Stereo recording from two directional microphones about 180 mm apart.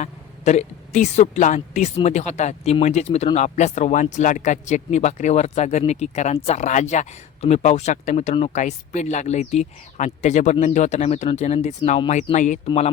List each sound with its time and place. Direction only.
0.0 s a woman's voice: 40° left (ahead or behind)